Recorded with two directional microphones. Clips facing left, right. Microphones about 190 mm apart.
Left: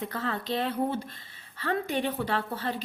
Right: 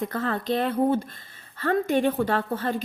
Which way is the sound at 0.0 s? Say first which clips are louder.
Right 5 dB; 50° right (ahead or behind).